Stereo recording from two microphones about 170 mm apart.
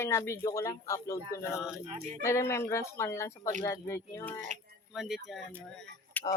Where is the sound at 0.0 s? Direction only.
15° left (ahead or behind).